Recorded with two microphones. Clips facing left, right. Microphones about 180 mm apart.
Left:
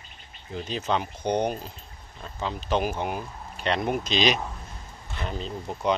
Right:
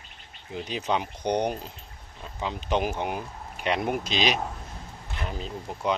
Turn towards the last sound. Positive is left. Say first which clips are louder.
# left 2 dB
turn(degrees=-5)  # may be behind; listen again after turning